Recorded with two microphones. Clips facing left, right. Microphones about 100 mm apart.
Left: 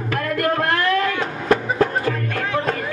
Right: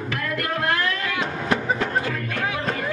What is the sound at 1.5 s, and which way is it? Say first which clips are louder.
Music: left 6 dB; 35° left (ahead or behind).